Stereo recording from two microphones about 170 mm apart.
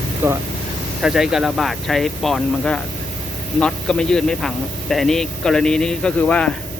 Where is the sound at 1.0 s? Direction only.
5° right (ahead or behind).